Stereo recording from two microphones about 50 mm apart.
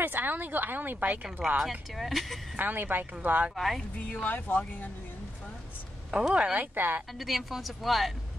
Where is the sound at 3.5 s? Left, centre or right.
Centre.